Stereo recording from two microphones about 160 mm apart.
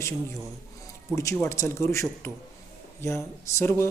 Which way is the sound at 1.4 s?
15° left (ahead or behind).